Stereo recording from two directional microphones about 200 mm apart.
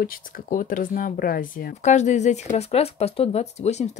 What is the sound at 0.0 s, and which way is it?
Speech, 45° left (ahead or behind).